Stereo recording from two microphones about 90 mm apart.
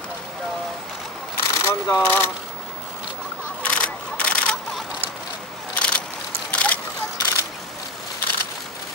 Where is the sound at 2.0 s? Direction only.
25° left (ahead or behind).